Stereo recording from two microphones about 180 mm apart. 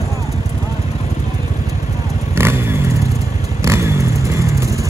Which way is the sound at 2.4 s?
15° right (ahead or behind).